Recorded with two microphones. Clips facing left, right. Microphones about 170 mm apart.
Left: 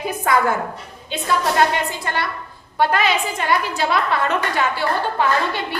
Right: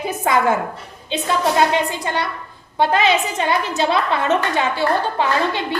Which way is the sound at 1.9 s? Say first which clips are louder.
Right 2 dB; 20° right (ahead or behind).